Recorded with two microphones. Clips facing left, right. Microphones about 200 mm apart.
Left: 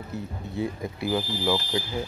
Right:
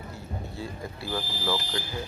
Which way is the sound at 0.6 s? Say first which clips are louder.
Left 11 dB; 20° left (ahead or behind).